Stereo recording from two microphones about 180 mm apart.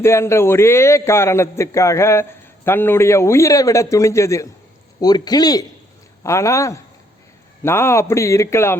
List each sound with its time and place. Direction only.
0.0 s a man's voice: 15° left (ahead or behind)